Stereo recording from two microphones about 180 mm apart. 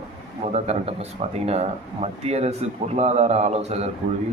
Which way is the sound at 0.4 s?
35° right (ahead or behind).